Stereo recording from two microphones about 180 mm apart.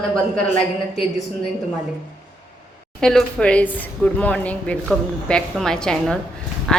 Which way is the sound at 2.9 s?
5° left (ahead or behind).